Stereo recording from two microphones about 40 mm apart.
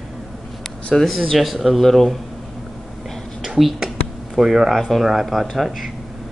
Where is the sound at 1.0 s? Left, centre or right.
Centre.